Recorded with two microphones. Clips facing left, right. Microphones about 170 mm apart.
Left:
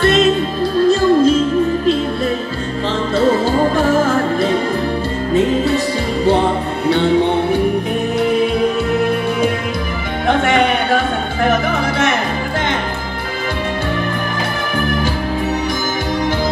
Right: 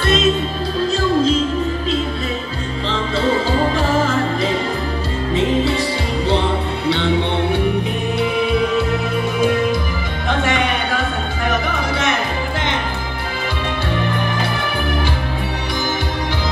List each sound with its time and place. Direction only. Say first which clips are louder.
0.8 s music: left 5 dB; 50° left (ahead or behind)
3.7 s music: left 4 dB; 50° left (ahead or behind)
10.2 s music: left 5 dB; 55° left (ahead or behind)